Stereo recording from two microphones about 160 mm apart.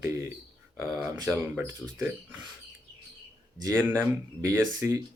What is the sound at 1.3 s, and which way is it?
Speech, 10° right (ahead or behind).